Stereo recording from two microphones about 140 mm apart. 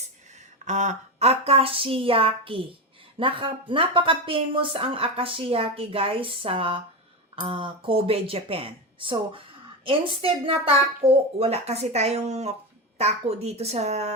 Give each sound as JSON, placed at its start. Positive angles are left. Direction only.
{"t": 0.3, "sound": "a woman's voice", "side_deg": -55}